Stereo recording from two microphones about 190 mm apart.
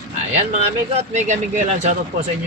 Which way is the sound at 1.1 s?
40° right (ahead or behind).